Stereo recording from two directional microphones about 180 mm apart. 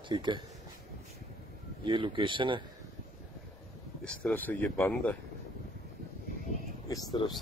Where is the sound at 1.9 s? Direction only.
30° right (ahead or behind).